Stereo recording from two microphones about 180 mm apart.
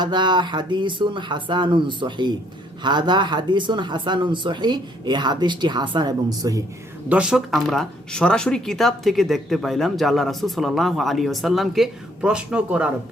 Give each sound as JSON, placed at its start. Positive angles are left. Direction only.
{"t": 0.0, "sound": "speech", "side_deg": -25}
{"t": 7.1, "sound": "speech", "side_deg": -5}